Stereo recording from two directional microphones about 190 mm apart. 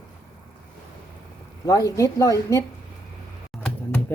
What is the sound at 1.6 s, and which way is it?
Speech, 15° left (ahead or behind).